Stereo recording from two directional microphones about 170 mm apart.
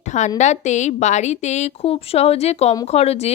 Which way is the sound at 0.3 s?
45° left (ahead or behind).